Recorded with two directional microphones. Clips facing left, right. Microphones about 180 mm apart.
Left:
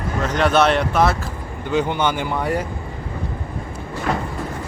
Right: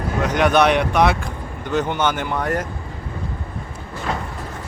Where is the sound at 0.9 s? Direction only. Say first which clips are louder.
Right 1 dB; centre (ahead or behind).